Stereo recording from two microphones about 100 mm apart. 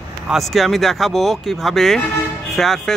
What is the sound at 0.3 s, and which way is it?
A man's voice, centre (ahead or behind).